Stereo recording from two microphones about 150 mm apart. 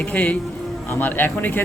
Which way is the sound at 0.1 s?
10° left (ahead or behind).